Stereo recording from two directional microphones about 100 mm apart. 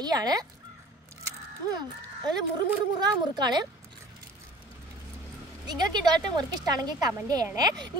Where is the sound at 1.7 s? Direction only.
45° right (ahead or behind).